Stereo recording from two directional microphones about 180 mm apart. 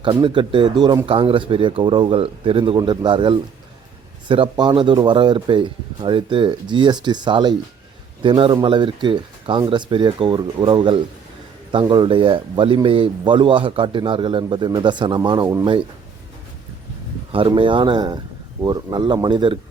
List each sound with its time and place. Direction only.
0.0 s speech: 30° right (ahead or behind)
17.3 s speech: 25° right (ahead or behind)